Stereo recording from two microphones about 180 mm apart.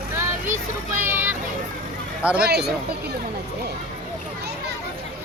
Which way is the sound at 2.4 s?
65° right (ahead or behind).